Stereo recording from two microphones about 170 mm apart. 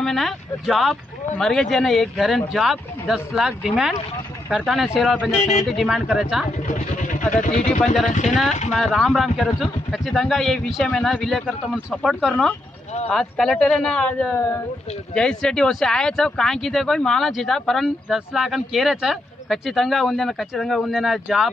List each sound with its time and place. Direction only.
0.0 s speech: centre (ahead or behind)
6.7 s speech: 50° left (ahead or behind)
8.7 s speech: centre (ahead or behind)